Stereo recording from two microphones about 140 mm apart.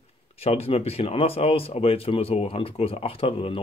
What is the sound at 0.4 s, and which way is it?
Speech, 45° left (ahead or behind).